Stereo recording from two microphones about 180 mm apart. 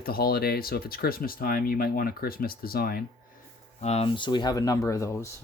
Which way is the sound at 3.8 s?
35° left (ahead or behind).